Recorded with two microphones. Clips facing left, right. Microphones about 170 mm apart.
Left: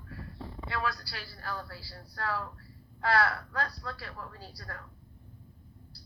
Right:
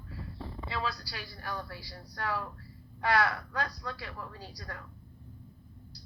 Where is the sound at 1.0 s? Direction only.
15° right (ahead or behind).